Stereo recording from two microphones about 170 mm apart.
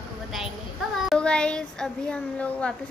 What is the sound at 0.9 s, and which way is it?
A child's voice, centre (ahead or behind).